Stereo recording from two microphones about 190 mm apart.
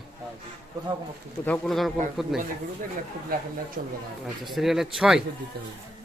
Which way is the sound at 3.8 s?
45° right (ahead or behind).